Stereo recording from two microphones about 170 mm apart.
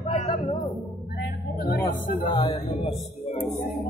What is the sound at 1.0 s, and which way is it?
Music, 70° left (ahead or behind).